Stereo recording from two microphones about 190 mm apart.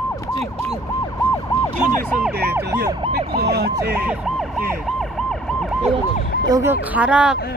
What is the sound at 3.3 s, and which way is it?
Emergency vehicle, 55° right (ahead or behind).